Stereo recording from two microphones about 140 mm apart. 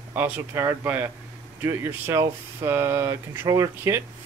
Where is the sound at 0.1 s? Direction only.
15° right (ahead or behind).